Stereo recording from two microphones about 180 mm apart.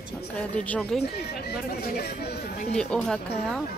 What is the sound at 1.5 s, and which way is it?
Speech, 60° left (ahead or behind).